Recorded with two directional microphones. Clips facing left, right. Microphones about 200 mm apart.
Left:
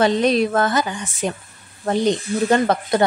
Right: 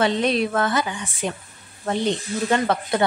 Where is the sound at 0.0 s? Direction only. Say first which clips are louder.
Left 4 dB; 40° left (ahead or behind).